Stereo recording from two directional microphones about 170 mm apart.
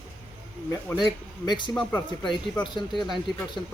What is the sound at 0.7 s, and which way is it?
A man's voice, 20° left (ahead or behind).